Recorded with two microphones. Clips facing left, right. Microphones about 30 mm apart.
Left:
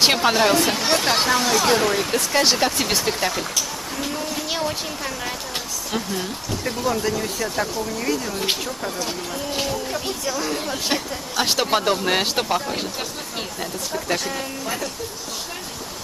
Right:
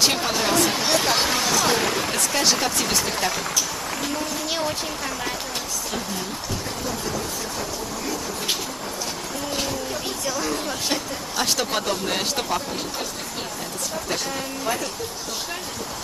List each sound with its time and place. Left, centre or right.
0.0 s speech: left
0.5 s speech: centre
2.5 s speech: centre
3.2 s speech: centre
10.0 s speech: centre; by 12.5 s left
14.1 s speech: centre